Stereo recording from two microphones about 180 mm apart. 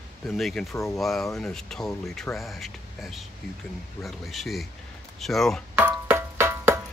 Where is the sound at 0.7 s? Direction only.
15° left (ahead or behind).